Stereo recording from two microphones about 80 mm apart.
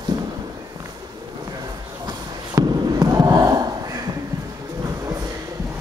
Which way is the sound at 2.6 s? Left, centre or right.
Right.